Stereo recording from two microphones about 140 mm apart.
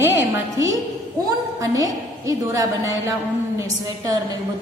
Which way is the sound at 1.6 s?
25° right (ahead or behind).